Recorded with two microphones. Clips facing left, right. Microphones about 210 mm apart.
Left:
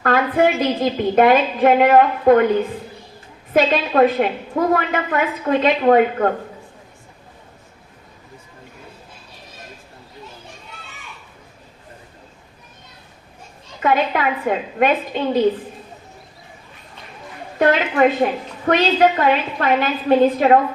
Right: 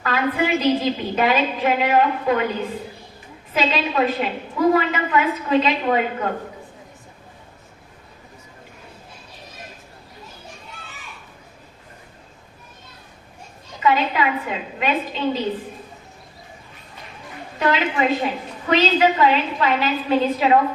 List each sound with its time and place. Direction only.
0.0 s a woman's voice: 50° left (ahead or behind)
3.5 s a woman's voice: 50° left (ahead or behind)
13.7 s a woman's voice: 50° left (ahead or behind)
17.6 s a woman's voice: 50° left (ahead or behind)